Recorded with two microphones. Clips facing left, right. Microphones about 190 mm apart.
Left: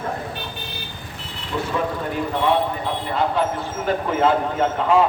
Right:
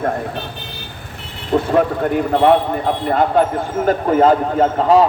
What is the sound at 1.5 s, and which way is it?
Speech, 50° right (ahead or behind).